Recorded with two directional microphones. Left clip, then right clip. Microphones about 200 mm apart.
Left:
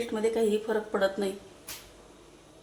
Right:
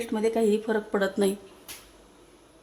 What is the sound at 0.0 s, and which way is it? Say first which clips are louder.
Speech: right 2 dB; 40° right (ahead or behind).